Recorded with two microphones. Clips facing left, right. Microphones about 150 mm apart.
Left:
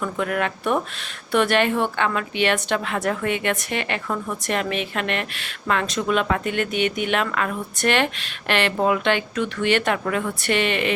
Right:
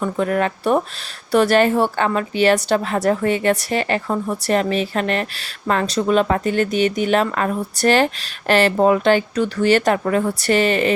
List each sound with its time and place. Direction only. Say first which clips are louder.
0.0 s speech: right 5 dB; 35° right (ahead or behind)